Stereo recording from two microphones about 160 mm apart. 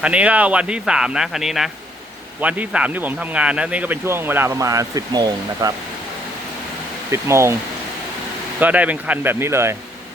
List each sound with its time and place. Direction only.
0.0 s a man's voice: 5° right (ahead or behind); by 5.7 s 25° right (ahead or behind)
7.1 s a man's voice: 15° right (ahead or behind)
8.5 s a man's voice: 10° right (ahead or behind)